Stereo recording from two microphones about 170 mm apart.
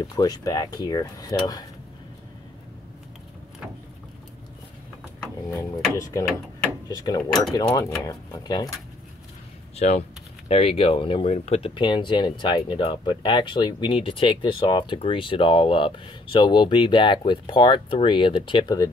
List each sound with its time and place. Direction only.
0.0 s speech: 20° left (ahead or behind)
5.5 s speech: 20° left (ahead or behind)
9.8 s speech: 40° left (ahead or behind)